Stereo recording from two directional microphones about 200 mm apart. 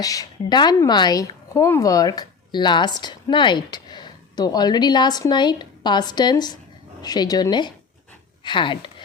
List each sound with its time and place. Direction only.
0.0 s speech: 20° left (ahead or behind)